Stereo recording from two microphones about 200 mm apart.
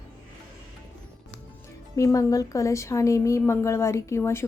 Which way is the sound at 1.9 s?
15° left (ahead or behind).